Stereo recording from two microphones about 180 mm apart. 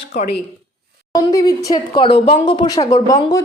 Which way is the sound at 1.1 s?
20° left (ahead or behind).